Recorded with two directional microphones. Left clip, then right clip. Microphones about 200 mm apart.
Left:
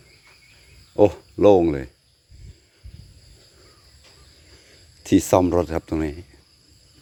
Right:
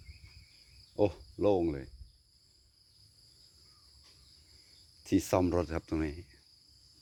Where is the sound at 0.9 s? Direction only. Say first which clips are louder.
Left 13 dB; 30° left (ahead or behind).